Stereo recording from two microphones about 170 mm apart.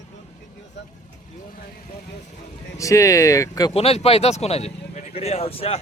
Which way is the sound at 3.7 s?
35° left (ahead or behind).